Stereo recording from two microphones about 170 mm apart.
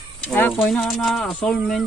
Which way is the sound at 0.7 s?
Centre (ahead or behind).